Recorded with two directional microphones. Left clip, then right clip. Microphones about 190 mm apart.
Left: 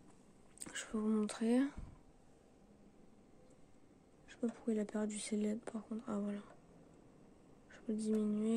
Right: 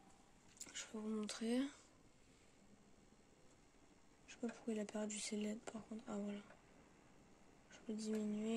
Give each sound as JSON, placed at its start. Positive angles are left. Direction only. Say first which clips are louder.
{"t": 0.7, "sound": "a sound", "louder": "left 9 dB", "side_deg": 30}
{"t": 1.1, "sound": "speech", "louder": "left 7 dB", "side_deg": 15}
{"t": 4.3, "sound": "speech", "louder": "left 7 dB", "side_deg": 10}
{"t": 7.7, "sound": "speech", "louder": "left 7 dB", "side_deg": 10}